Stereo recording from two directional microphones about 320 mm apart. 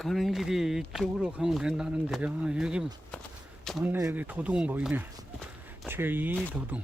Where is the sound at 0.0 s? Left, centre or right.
Centre.